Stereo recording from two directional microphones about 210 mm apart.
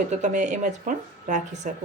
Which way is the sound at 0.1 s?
35° right (ahead or behind).